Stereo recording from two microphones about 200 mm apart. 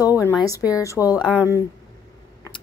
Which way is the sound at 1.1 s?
5° right (ahead or behind).